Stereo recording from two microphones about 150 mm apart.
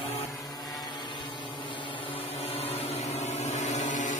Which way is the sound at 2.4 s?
40° left (ahead or behind).